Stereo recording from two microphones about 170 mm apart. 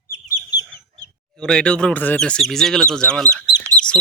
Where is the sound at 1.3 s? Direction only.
5° left (ahead or behind).